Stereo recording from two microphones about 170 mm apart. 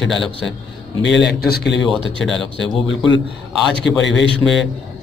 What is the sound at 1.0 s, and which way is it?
Speech, 90° left.